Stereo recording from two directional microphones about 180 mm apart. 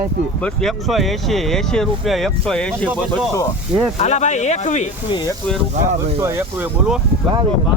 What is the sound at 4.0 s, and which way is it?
Speech, 40° left (ahead or behind).